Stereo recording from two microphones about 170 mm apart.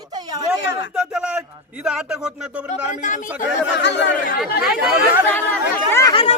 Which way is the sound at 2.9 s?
50° left (ahead or behind).